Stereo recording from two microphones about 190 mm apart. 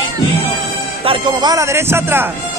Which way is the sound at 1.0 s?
25° right (ahead or behind).